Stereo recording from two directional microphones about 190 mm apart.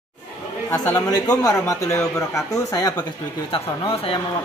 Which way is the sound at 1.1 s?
20° left (ahead or behind).